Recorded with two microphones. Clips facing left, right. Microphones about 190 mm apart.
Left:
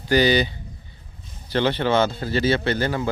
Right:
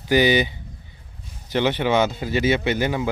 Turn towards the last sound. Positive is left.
turn(degrees=-15)  # may be behind; listen again after turning